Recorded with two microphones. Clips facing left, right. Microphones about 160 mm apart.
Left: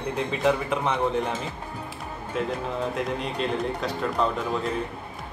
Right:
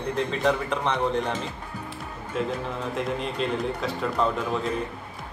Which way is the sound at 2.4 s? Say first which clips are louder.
Left 1 dB; centre (ahead or behind).